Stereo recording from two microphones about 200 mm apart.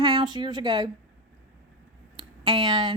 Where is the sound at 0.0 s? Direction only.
25° right (ahead or behind).